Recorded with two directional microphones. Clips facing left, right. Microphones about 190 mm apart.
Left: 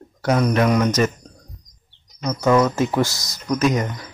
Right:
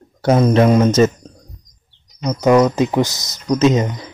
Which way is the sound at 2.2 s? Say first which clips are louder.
Right 4 dB; 15° right (ahead or behind).